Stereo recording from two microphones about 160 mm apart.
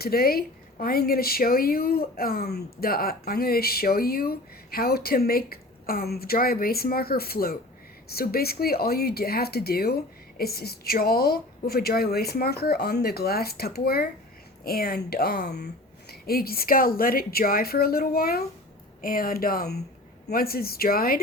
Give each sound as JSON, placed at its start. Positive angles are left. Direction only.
{"t": 0.0, "sound": "speech", "side_deg": 70}